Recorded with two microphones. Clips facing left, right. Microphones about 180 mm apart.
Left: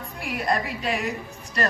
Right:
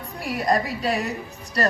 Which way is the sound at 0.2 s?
35° right (ahead or behind).